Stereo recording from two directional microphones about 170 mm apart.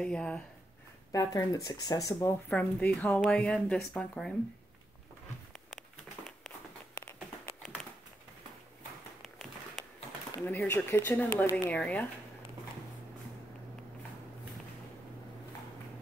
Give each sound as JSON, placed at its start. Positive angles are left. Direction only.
{"t": 0.0, "sound": "speech", "side_deg": 5}
{"t": 1.1, "sound": "speech", "side_deg": 20}
{"t": 2.5, "sound": "a woman's voice", "side_deg": 5}
{"t": 9.2, "sound": "a sound", "side_deg": 0}
{"t": 10.4, "sound": "a woman's voice", "side_deg": 10}